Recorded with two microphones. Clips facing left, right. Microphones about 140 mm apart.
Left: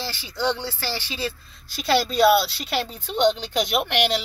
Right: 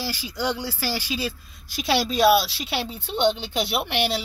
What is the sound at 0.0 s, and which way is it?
Speech, 10° right (ahead or behind).